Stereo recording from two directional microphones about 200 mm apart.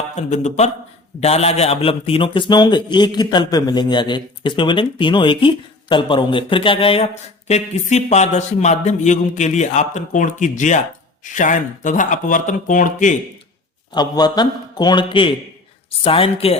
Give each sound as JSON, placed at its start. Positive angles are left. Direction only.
{"t": 0.2, "sound": "a man's voice", "side_deg": 35}
{"t": 13.9, "sound": "a man's voice", "side_deg": 20}